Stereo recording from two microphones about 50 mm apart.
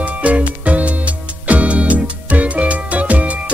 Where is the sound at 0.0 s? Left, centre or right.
Right.